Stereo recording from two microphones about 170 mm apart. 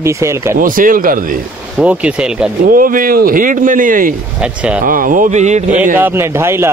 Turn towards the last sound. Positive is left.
turn(degrees=-15)  # may be behind; listen again after turning